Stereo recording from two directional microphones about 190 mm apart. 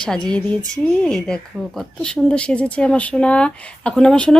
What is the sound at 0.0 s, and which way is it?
Speech, 5° left (ahead or behind).